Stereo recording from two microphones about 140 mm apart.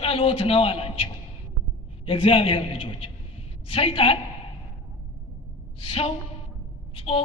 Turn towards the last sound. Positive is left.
turn(degrees=45)  # may be behind; listen again after turning